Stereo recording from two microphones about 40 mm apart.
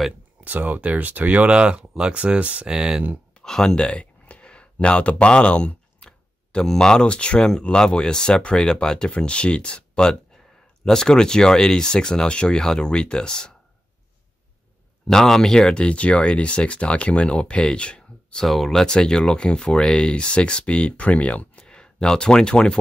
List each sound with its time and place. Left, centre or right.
0.4 s speech: right
1.5 s speech: right
3.3 s speech: centre
3.7 s a sound: left
7.1 s speech: left
7.3 s speech: centre
15.0 s speech: centre; by 18.4 s left
18.5 s speech: centre; by 21.6 s left
21.6 s speech: left